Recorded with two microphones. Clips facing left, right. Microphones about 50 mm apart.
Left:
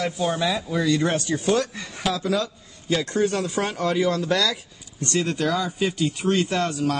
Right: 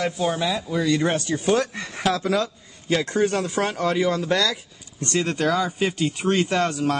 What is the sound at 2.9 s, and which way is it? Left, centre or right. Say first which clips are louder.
Speech: right 1 dB; right.